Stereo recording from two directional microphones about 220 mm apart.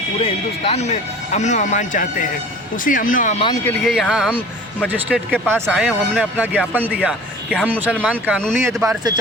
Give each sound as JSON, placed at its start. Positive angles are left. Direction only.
{"t": 0.2, "sound": "speech", "side_deg": 25}
{"t": 3.7, "sound": "speech", "side_deg": 5}